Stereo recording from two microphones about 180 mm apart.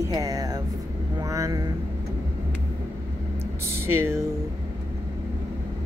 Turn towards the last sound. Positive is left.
turn(degrees=-15)  # may be behind; listen again after turning